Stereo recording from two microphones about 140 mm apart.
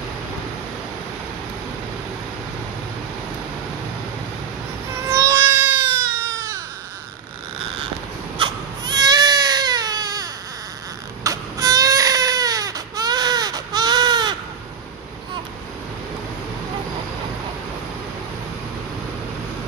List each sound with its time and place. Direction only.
4.9 s baby cry: 20° right (ahead or behind)
8.4 s baby cry: 30° right (ahead or behind)